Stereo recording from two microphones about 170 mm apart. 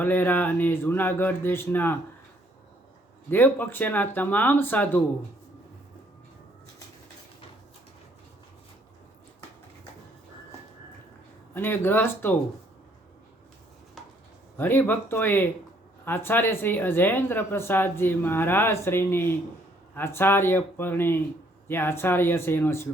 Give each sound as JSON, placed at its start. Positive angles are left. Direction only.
{"t": 0.0, "sound": "speech", "side_deg": 10}
{"t": 3.2, "sound": "speech", "side_deg": 10}
{"t": 11.5, "sound": "speech", "side_deg": 10}
{"t": 14.6, "sound": "speech", "side_deg": 10}